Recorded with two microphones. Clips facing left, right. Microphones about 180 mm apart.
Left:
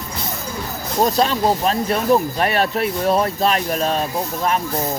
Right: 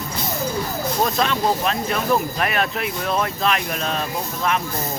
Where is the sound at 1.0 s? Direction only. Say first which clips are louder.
Left 4 dB; 35° left (ahead or behind).